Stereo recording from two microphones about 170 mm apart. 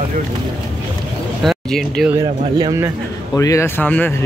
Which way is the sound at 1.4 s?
5° left (ahead or behind).